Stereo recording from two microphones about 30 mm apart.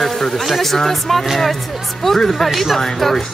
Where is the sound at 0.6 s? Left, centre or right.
Centre.